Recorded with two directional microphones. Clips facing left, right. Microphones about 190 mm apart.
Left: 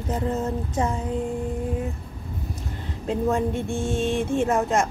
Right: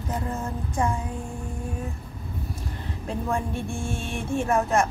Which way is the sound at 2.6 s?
20° left (ahead or behind).